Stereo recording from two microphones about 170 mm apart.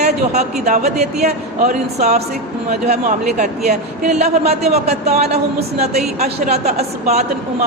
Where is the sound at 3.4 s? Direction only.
45° right (ahead or behind).